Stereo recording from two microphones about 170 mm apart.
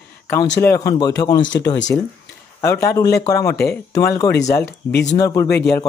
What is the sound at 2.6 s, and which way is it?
Speech, 15° left (ahead or behind).